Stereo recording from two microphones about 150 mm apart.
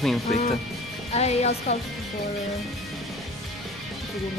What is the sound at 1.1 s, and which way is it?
Speech, 45° left (ahead or behind).